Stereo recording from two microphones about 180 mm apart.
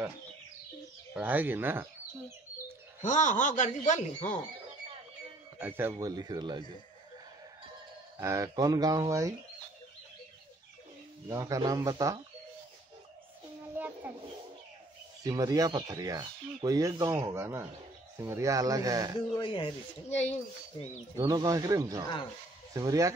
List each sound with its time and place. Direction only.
1.1 s speech: 10° right (ahead or behind)
3.0 s speech: 45° left (ahead or behind)
5.6 s speech: 10° right (ahead or behind)
8.2 s speech: 15° right (ahead or behind)
11.2 s speech: 20° right (ahead or behind)
13.7 s a sound: 10° right (ahead or behind)
15.2 s speech: 20° right (ahead or behind)
19.3 s speech: 30° left (ahead or behind)
21.2 s speech: 20° right (ahead or behind)